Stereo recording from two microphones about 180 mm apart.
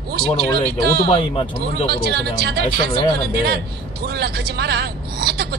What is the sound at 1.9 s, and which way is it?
Speech, 60° right (ahead or behind).